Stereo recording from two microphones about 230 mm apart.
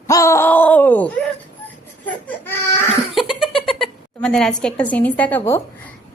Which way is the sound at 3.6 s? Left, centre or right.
Centre.